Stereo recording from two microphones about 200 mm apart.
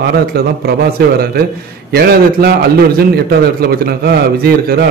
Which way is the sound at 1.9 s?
50° right (ahead or behind).